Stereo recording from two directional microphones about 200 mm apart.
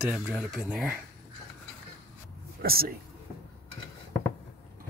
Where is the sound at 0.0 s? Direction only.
5° right (ahead or behind).